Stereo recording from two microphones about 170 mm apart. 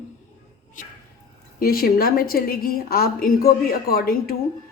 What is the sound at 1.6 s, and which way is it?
A woman's voice, 60° left (ahead or behind).